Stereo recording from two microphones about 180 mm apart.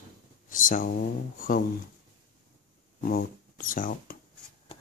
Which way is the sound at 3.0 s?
55° left (ahead or behind).